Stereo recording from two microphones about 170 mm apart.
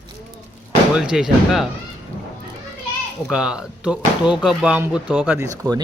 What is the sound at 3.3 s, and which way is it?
Speech, 5° right (ahead or behind).